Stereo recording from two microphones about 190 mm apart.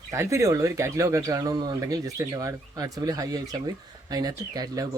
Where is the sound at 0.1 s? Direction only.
15° right (ahead or behind).